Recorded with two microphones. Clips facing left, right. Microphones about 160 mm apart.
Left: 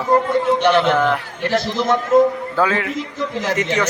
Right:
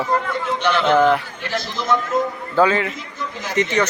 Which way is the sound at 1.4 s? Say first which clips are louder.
Left 6 dB; 65° left (ahead or behind).